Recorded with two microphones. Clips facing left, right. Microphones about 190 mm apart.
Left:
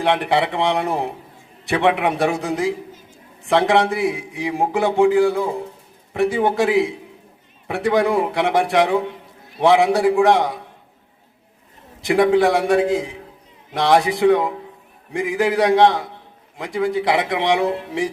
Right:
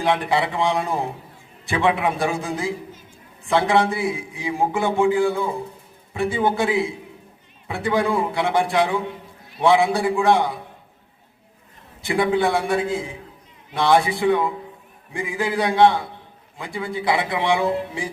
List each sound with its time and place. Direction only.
0.0 s a man's voice: 70° left (ahead or behind)
12.0 s a man's voice: 75° left (ahead or behind)